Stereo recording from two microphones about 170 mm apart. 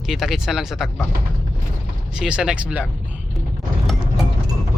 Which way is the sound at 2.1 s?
5° right (ahead or behind).